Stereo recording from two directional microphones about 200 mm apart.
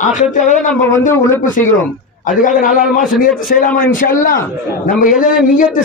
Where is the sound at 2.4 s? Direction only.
40° left (ahead or behind).